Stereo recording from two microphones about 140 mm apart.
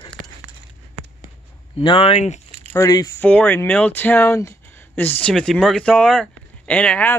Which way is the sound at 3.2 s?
10° left (ahead or behind).